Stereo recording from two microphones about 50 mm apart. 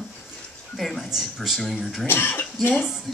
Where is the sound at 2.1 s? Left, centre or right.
Left.